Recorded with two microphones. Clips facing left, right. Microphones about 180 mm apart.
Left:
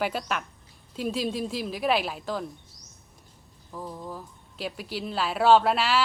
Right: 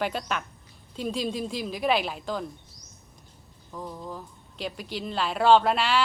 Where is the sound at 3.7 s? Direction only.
5° left (ahead or behind).